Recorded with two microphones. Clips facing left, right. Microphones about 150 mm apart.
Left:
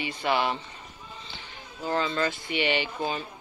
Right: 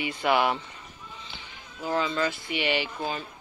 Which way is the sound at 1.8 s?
5° right (ahead or behind).